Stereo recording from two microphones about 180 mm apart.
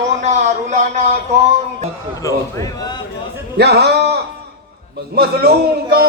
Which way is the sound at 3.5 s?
65° right (ahead or behind).